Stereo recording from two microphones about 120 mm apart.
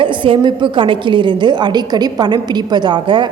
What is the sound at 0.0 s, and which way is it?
A woman's voice, 45° right (ahead or behind).